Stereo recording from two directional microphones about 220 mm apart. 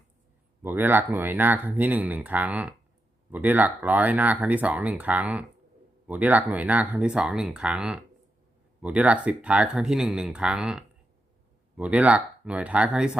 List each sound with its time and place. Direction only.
0.6 s speech: 10° right (ahead or behind)